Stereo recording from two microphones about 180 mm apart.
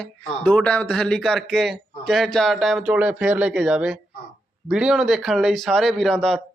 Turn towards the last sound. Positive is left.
turn(degrees=5)  # may be behind; listen again after turning